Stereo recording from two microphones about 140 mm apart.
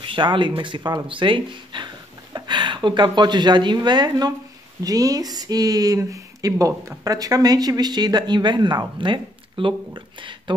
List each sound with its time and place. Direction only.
0.0 s speech: 35° right (ahead or behind)